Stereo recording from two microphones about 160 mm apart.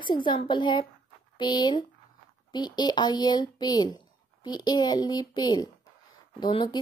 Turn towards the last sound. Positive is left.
turn(degrees=30)  # may be behind; listen again after turning